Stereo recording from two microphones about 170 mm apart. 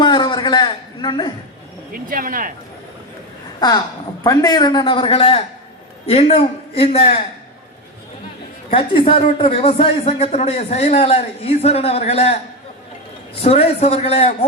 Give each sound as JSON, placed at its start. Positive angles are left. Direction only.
{"t": 0.0, "sound": "a sound", "side_deg": 30}
{"t": 1.9, "sound": "speech", "side_deg": -55}
{"t": 3.6, "sound": "a man's voice", "side_deg": 25}
{"t": 8.7, "sound": "speech", "side_deg": 30}
{"t": 13.4, "sound": "speech", "side_deg": 35}